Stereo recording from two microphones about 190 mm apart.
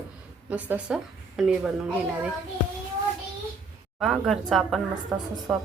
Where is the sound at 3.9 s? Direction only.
Centre (ahead or behind).